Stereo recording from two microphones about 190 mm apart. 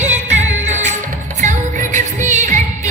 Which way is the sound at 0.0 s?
40° right (ahead or behind).